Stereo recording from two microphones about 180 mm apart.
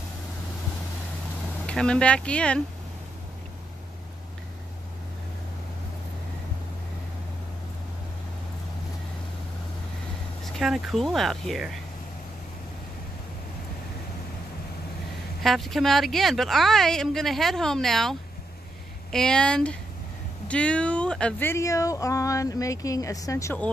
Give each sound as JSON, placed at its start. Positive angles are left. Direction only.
{"t": 1.7, "sound": "speech", "side_deg": 5}
{"t": 10.4, "sound": "speech", "side_deg": 0}
{"t": 15.4, "sound": "speech", "side_deg": 0}
{"t": 19.1, "sound": "speech", "side_deg": 5}